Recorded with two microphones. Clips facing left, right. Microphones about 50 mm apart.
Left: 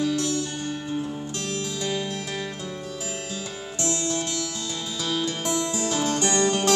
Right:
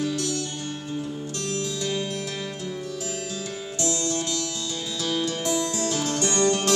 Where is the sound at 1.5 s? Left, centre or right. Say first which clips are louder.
Right 1 dB; left.